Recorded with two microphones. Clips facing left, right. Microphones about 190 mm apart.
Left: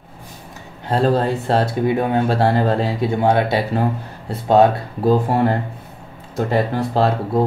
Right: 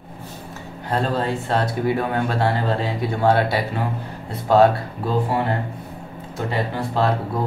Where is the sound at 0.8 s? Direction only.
35° left (ahead or behind).